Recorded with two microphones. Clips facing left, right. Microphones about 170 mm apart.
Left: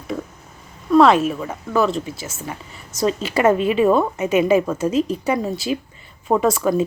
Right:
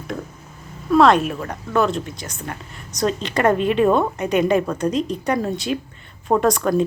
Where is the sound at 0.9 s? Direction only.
Centre (ahead or behind).